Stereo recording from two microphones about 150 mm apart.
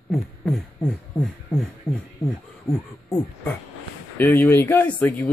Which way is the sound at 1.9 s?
15° left (ahead or behind).